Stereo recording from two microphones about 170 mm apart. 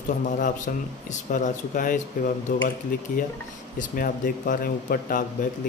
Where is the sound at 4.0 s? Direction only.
60° left (ahead or behind).